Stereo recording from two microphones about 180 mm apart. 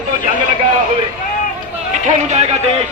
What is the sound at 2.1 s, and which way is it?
Speech, 40° right (ahead or behind).